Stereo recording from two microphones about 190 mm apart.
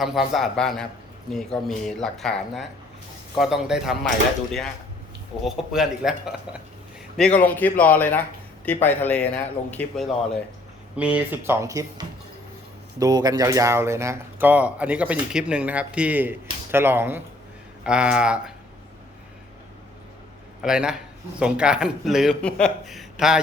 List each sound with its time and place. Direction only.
0.0 s speech: centre (ahead or behind)
5.5 s speech: centre (ahead or behind)
7.2 s a man's voice: 5° left (ahead or behind)
10.9 s speech: 5° right (ahead or behind)
20.6 s speech: 5° right (ahead or behind)